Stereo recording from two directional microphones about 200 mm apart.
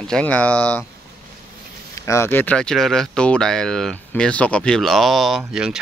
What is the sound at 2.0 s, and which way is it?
Speech, 15° left (ahead or behind).